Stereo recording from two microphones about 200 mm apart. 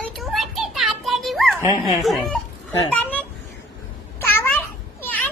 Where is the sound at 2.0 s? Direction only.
Centre (ahead or behind).